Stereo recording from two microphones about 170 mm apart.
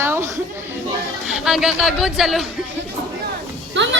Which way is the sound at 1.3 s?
Centre (ahead or behind).